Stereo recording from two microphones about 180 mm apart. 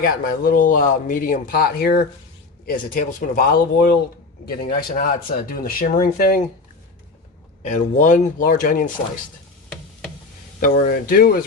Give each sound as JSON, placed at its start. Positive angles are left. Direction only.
{"t": 0.0, "sound": "speech", "side_deg": 55}
{"t": 7.6, "sound": "speech", "side_deg": 45}
{"t": 10.6, "sound": "speech", "side_deg": 50}